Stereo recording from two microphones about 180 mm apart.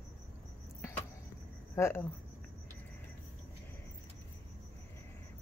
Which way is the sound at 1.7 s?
15° left (ahead or behind).